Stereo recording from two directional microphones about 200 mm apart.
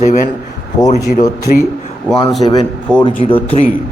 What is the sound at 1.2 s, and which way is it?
Speech, 45° left (ahead or behind).